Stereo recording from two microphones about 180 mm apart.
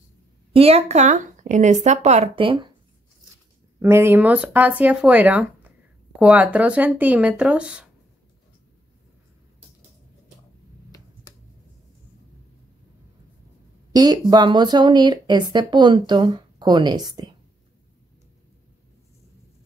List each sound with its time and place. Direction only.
0.5 s speech: 35° right (ahead or behind)
3.8 s speech: 15° right (ahead or behind)
13.9 s a woman's voice: 25° right (ahead or behind)